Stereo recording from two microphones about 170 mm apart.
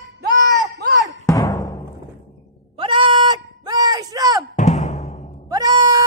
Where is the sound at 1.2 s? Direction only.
20° left (ahead or behind).